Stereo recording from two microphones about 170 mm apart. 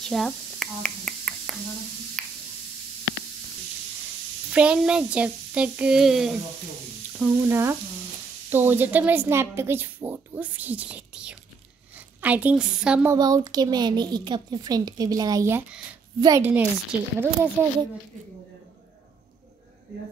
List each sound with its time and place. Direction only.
0.1 s finger snapping: centre (ahead or behind)
2.2 s spray: 5° left (ahead or behind)
4.5 s a woman's voice: 5° right (ahead or behind)
7.2 s a woman's voice: 15° right (ahead or behind)
13.1 s a woman's voice: 20° right (ahead or behind)